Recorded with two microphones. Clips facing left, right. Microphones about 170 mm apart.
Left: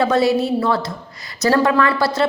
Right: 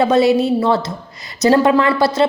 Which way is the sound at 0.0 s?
20° right (ahead or behind).